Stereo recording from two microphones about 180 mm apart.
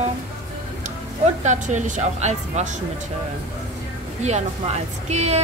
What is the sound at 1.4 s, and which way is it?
Speech, 40° right (ahead or behind).